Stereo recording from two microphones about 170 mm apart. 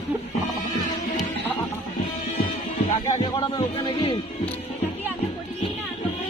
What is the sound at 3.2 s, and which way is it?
Speech, 25° left (ahead or behind).